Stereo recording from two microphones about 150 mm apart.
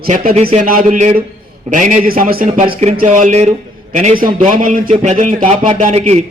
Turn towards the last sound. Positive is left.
turn(degrees=-45)  # may be behind; listen again after turning